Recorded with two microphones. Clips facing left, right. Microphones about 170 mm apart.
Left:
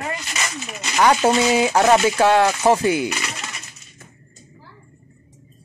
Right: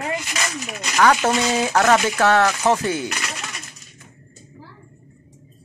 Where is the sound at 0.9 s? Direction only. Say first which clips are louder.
Left 1 dB; 15° left (ahead or behind).